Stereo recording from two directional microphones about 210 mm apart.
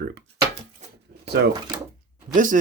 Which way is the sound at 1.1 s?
50° right (ahead or behind).